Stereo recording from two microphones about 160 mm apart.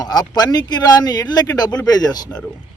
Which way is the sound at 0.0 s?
25° left (ahead or behind).